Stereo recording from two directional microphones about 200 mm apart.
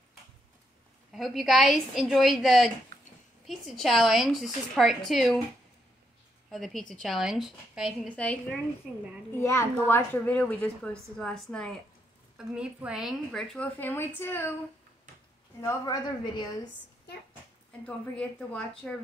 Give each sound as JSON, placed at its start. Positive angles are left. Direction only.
{"t": 1.1, "sound": "a woman's voice", "side_deg": 0}
{"t": 6.5, "sound": "a woman's voice", "side_deg": 0}
{"t": 15.6, "sound": "a woman's voice", "side_deg": 20}
{"t": 17.8, "sound": "a woman's voice", "side_deg": 5}